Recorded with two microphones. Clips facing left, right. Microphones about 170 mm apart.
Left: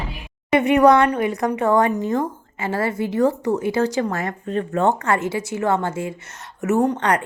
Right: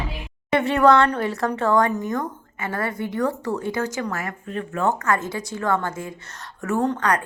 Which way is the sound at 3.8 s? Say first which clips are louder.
Left 5 dB; 35° left (ahead or behind).